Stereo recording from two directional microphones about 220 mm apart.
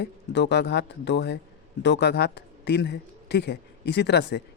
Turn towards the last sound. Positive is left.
turn(degrees=50)  # may be behind; listen again after turning